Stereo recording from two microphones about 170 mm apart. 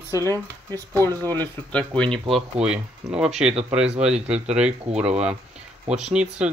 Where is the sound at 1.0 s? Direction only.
15° left (ahead or behind).